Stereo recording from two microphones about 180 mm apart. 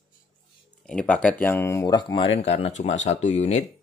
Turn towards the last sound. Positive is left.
turn(degrees=40)  # may be behind; listen again after turning